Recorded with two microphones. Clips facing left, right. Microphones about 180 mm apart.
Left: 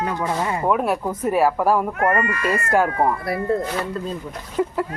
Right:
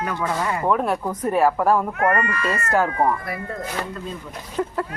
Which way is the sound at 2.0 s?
25° left (ahead or behind).